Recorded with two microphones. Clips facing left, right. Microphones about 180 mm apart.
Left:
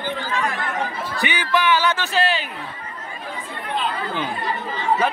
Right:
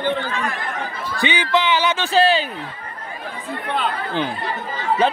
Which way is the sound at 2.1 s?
30° right (ahead or behind).